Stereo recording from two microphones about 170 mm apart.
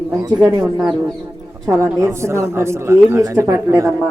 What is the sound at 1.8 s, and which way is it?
A woman's voice, 15° right (ahead or behind).